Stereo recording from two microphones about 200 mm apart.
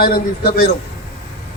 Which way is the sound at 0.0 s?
50° left (ahead or behind).